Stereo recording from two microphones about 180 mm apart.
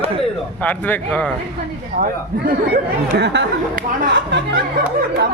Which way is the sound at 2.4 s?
60° right (ahead or behind).